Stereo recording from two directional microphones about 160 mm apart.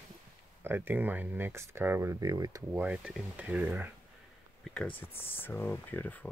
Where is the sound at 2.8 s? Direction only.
5° right (ahead or behind).